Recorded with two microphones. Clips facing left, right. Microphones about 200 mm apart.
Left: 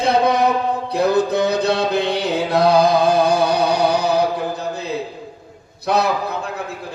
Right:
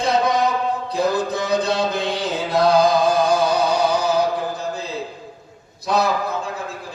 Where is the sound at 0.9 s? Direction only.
65° left (ahead or behind).